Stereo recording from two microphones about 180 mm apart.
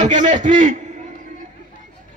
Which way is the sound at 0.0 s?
45° right (ahead or behind).